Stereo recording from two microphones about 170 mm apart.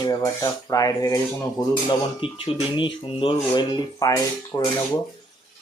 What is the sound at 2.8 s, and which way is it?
Speech, 30° left (ahead or behind).